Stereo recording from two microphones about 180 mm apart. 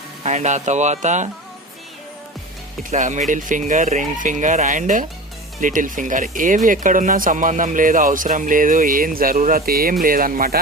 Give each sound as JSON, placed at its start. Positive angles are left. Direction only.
{"t": 0.2, "sound": "speech", "side_deg": -40}
{"t": 2.9, "sound": "speech", "side_deg": -40}